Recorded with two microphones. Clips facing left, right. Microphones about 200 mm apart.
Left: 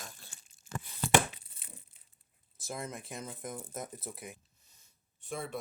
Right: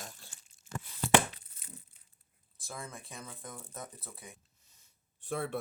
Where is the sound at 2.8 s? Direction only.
20° left (ahead or behind).